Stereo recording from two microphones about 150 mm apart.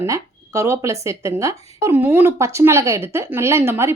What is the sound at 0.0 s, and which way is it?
A woman's voice, 20° right (ahead or behind).